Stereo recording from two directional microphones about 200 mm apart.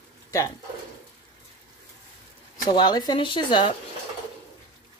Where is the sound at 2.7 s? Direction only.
20° left (ahead or behind).